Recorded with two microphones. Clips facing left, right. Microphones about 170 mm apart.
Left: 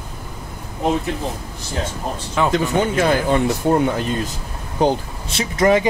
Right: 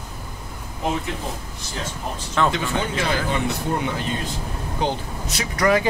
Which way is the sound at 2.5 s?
50° left (ahead or behind).